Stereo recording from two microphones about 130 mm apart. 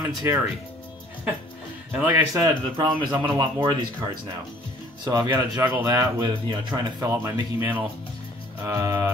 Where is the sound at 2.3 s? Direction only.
25° right (ahead or behind).